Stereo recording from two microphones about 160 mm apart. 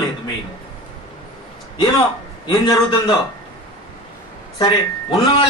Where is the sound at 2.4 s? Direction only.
30° left (ahead or behind).